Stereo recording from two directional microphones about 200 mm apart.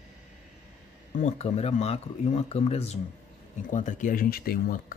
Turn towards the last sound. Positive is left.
turn(degrees=45)  # may be behind; listen again after turning